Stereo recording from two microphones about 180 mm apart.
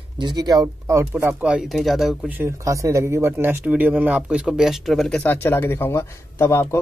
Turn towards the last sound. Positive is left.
turn(degrees=15)  # may be behind; listen again after turning